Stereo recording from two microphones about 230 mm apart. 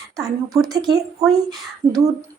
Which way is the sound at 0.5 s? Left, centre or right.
Centre.